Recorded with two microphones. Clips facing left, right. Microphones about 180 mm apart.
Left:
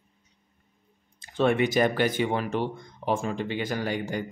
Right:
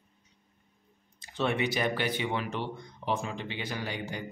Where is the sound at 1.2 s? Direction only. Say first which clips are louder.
Left 7 dB; 50° left (ahead or behind).